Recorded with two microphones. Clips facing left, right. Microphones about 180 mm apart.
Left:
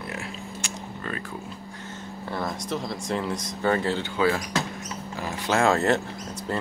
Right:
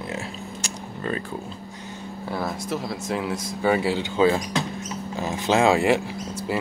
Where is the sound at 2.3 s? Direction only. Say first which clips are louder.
Right 2 dB; 5° right (ahead or behind).